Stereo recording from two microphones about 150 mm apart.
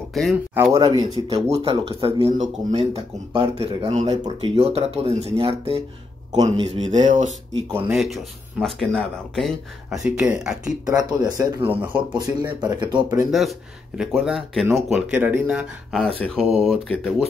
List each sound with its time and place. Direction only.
0.1 s speech: centre (ahead or behind)
0.7 s speech: 25° right (ahead or behind)
1.3 s a man's voice: 40° right (ahead or behind)
6.3 s speech: 25° right (ahead or behind)
6.8 s a man's voice: 55° right (ahead or behind)
7.9 s speech: centre (ahead or behind)
10.9 s speech: 25° right (ahead or behind)
11.6 s speech: 10° right (ahead or behind)
12.1 s speech: 30° right (ahead or behind)
13.3 s speech: centre (ahead or behind)
15.9 s speech: 5° left (ahead or behind)